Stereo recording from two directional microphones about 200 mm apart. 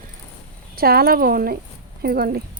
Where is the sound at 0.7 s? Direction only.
50° right (ahead or behind).